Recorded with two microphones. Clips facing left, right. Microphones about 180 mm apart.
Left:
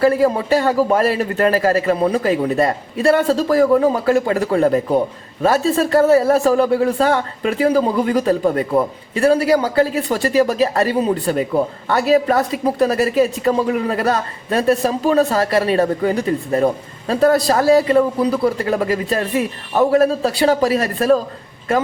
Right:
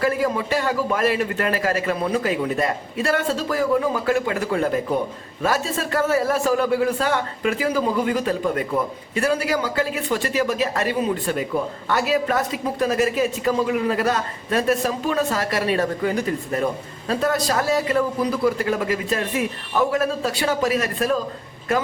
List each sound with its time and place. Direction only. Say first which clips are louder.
0.0 s a man's voice: left 7 dB; 30° left (ahead or behind)